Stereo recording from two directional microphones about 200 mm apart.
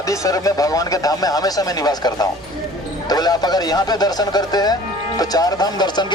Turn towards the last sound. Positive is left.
turn(degrees=20)  # may be behind; listen again after turning